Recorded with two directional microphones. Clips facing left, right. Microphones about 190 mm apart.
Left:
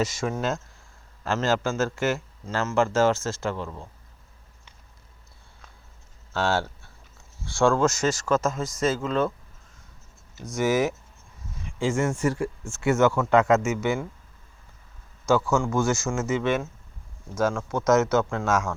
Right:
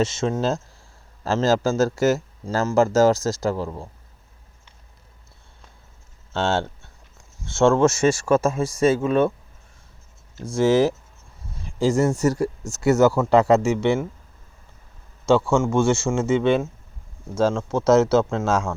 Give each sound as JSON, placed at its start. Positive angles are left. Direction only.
{"t": 0.0, "sound": "a man's voice", "side_deg": -25}
{"t": 6.3, "sound": "speech", "side_deg": -25}
{"t": 10.4, "sound": "a man's voice", "side_deg": -30}
{"t": 15.3, "sound": "speech", "side_deg": -30}